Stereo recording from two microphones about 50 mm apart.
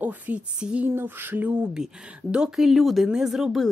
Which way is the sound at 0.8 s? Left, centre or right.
Right.